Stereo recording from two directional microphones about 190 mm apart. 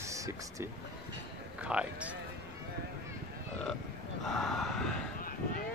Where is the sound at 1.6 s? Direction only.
5° right (ahead or behind).